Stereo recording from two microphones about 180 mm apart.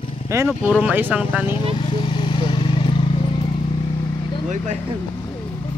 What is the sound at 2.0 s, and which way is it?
Vehicle, 25° left (ahead or behind).